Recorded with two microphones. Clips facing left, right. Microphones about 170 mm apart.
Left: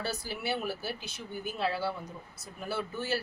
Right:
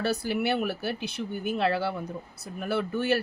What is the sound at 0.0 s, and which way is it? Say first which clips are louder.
Speech: right 9 dB; 65° right (ahead or behind).